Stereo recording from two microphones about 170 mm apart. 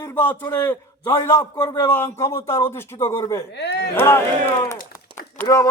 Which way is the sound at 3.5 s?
80° left.